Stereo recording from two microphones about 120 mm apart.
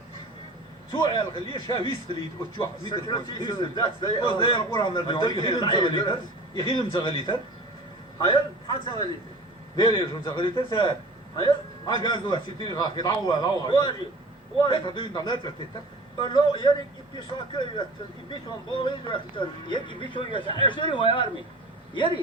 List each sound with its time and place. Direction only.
0.9 s a man's voice: 40° left (ahead or behind)
2.9 s a man's voice: 35° left (ahead or behind)
8.6 s a man's voice: 40° left (ahead or behind)